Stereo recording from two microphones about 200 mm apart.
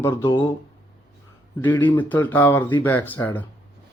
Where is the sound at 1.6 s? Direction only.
10° left (ahead or behind).